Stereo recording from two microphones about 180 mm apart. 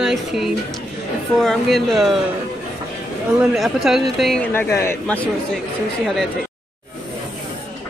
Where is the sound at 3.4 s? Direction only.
Centre (ahead or behind).